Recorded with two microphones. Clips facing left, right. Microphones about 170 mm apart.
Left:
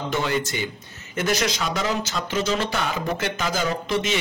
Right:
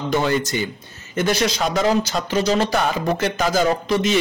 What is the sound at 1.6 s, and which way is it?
Speech, 40° right (ahead or behind).